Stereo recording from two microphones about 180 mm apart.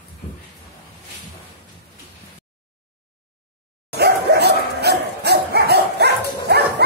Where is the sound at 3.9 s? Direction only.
65° right (ahead or behind).